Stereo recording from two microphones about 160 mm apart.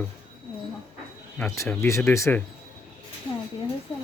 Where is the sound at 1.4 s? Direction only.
15° left (ahead or behind).